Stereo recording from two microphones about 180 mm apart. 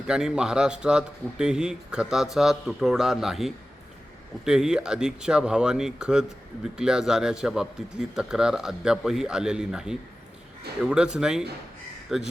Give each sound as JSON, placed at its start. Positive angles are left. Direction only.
{"t": 0.1, "sound": "speech", "side_deg": -5}